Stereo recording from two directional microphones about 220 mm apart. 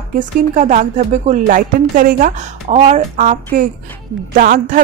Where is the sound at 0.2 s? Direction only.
35° right (ahead or behind).